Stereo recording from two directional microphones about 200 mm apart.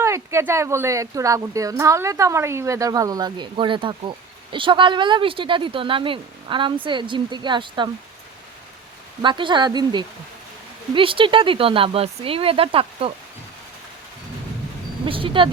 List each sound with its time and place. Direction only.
0.0 s speech: 15° right (ahead or behind)
9.2 s speech: 25° right (ahead or behind)
15.0 s speech: 25° right (ahead or behind)